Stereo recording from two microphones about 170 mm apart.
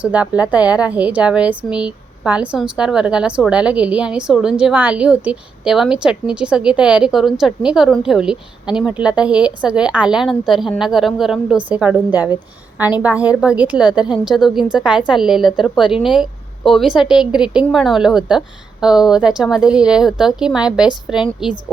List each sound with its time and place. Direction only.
0.0 s a woman's voice: 10° right (ahead or behind)